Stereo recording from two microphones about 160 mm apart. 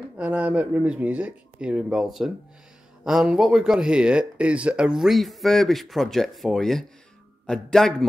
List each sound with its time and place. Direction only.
0.2 s speech: 10° right (ahead or behind)